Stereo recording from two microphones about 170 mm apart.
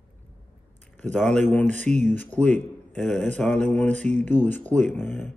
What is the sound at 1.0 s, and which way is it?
Speech, 5° left (ahead or behind).